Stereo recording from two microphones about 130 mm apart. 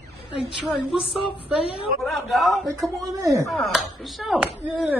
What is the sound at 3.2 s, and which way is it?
Speech, 25° right (ahead or behind).